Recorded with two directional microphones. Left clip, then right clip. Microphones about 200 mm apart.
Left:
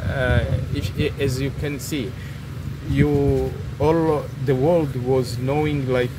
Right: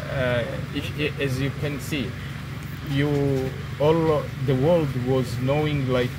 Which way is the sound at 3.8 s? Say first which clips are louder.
Left 1 dB; 15° left (ahead or behind).